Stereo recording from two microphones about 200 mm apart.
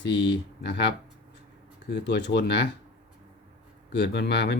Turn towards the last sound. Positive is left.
turn(degrees=55)  # may be behind; listen again after turning